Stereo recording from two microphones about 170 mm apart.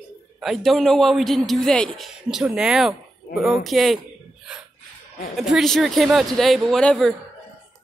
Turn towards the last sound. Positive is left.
turn(degrees=5)  # may be behind; listen again after turning